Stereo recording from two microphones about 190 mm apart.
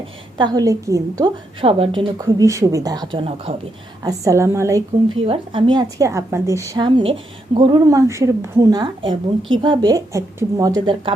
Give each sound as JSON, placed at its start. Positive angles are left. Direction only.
{"t": 0.3, "sound": "a woman's voice", "side_deg": -20}
{"t": 1.6, "sound": "a woman's voice", "side_deg": -30}
{"t": 4.0, "sound": "a woman's voice", "side_deg": -15}
{"t": 5.2, "sound": "a woman's voice", "side_deg": -30}